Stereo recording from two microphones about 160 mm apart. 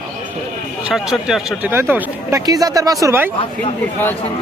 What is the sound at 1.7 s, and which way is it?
Speech, 15° right (ahead or behind).